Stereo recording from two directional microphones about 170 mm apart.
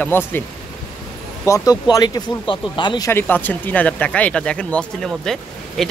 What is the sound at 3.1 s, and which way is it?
Speech, 10° left (ahead or behind).